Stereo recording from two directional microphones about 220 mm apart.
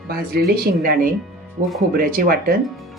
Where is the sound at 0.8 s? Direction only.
40° right (ahead or behind).